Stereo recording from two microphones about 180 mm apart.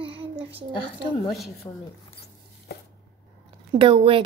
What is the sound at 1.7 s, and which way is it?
Speech, 25° left (ahead or behind).